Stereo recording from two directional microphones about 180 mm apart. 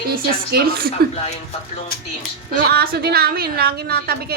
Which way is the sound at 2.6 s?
60° right (ahead or behind).